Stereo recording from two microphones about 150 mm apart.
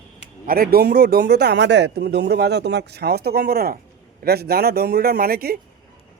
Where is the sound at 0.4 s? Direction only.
90° right.